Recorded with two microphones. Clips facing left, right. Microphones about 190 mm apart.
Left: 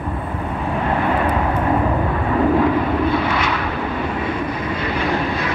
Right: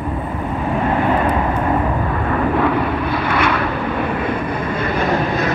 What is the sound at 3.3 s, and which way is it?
Vehicle, 55° right (ahead or behind).